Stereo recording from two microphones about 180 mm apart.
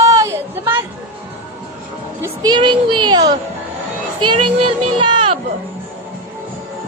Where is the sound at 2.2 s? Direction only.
25° right (ahead or behind).